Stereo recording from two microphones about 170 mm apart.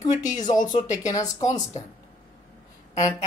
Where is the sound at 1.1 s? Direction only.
20° left (ahead or behind).